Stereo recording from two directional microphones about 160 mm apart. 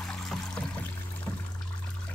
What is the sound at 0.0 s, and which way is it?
Music, 5° left (ahead or behind).